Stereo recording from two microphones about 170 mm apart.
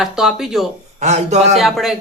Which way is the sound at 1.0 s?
40° right (ahead or behind).